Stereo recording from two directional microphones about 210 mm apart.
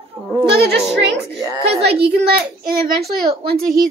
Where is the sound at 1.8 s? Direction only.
50° right (ahead or behind).